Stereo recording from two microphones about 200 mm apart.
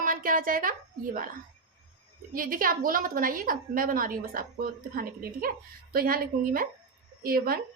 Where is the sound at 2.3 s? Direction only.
45° right (ahead or behind).